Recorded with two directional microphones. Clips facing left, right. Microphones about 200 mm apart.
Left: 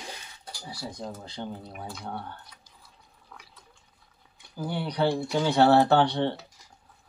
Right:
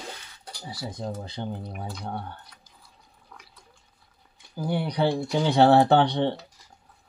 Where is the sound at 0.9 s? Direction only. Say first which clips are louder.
Right 4 dB; 20° right (ahead or behind).